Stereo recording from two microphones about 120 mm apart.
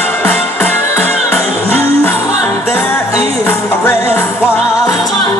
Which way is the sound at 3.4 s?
15° left (ahead or behind).